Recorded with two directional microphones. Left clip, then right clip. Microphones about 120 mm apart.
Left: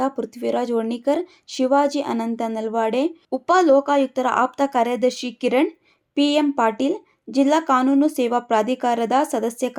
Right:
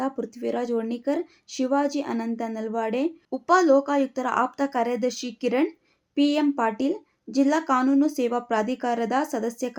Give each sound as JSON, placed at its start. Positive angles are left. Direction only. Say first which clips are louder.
{"t": 0.0, "sound": "speech", "louder": "left 5 dB", "side_deg": 20}